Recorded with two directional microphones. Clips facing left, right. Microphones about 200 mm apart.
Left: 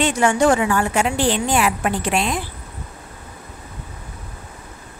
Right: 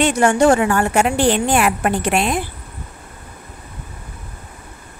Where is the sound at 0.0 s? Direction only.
60° right (ahead or behind).